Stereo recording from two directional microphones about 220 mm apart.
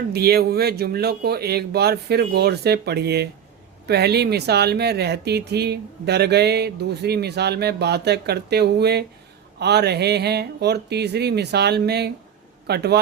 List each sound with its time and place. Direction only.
0.1 s speech: 45° right (ahead or behind)